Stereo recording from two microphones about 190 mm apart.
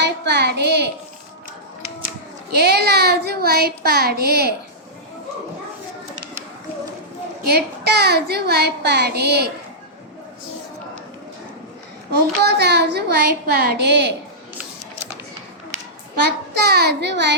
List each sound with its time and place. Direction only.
0.0 s a child's voice: 60° right (ahead or behind)
2.5 s speech: 60° right (ahead or behind)
7.4 s speech: 60° right (ahead or behind)
12.1 s speech: 60° right (ahead or behind)
16.2 s speech: 60° right (ahead or behind)